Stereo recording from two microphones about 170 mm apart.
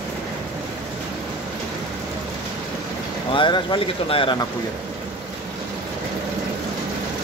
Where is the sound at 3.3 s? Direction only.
30° left (ahead or behind).